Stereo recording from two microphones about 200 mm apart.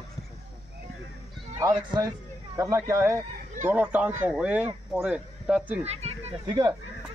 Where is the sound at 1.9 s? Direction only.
20° right (ahead or behind).